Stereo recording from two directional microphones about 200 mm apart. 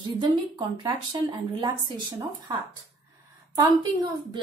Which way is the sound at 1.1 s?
25° right (ahead or behind).